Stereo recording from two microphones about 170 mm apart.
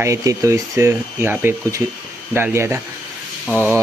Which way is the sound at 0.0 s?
20° right (ahead or behind).